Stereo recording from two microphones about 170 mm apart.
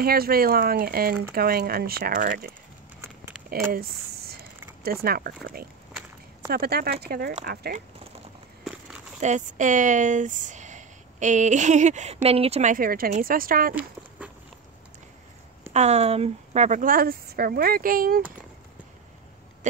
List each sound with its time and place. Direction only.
0.0 s speech: 60° right (ahead or behind)
5.0 s speech: 60° right (ahead or behind)
9.2 s speech: 45° right (ahead or behind)
12.7 s speech: 60° right (ahead or behind)
15.7 s speech: 40° right (ahead or behind); by 18.2 s 60° right (ahead or behind)
19.6 s a sound: 45° right (ahead or behind)